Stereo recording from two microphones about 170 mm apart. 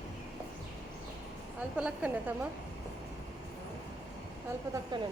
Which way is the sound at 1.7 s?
5° right (ahead or behind).